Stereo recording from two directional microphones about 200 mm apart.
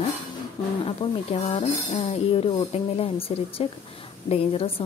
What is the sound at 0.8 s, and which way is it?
Speech, 25° left (ahead or behind).